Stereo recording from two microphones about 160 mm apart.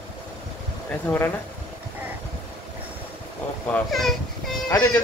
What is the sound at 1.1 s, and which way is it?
Speech, 20° left (ahead or behind).